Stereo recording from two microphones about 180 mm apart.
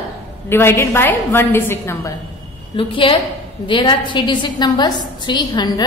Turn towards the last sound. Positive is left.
turn(degrees=25)  # may be behind; listen again after turning